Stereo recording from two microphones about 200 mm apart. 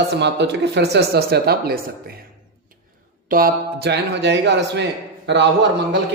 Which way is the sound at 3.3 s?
50° right (ahead or behind).